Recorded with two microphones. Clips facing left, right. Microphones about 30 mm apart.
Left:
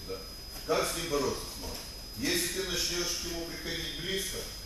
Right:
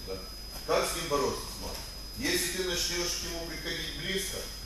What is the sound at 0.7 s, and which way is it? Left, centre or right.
A man's voice, centre.